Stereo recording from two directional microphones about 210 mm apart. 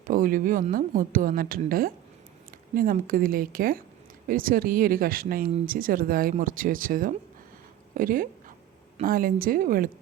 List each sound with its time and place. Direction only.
0.1 s a woman's voice: 40° right (ahead or behind)